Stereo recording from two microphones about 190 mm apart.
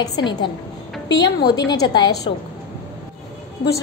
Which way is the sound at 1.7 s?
20° left (ahead or behind).